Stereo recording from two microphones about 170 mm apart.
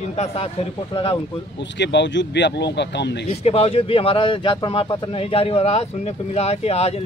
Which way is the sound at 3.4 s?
35° left (ahead or behind).